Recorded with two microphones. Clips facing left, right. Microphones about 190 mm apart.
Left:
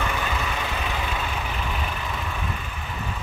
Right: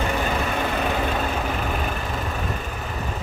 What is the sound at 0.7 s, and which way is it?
Vehicle, 45° right (ahead or behind).